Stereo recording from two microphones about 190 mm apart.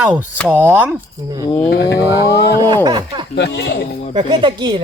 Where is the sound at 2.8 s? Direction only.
25° right (ahead or behind).